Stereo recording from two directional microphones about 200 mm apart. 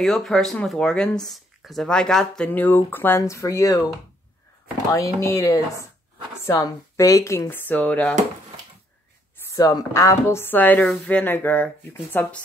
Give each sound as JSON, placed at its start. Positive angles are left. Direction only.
{"t": 0.0, "sound": "speech", "side_deg": 0}
{"t": 4.9, "sound": "speech", "side_deg": 15}
{"t": 9.5, "sound": "speech", "side_deg": 15}